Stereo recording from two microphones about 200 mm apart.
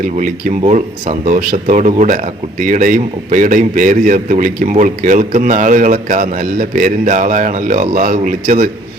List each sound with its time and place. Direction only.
0.2 s speech: 40° right (ahead or behind)